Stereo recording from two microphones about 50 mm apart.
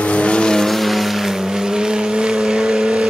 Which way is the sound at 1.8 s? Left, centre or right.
Centre.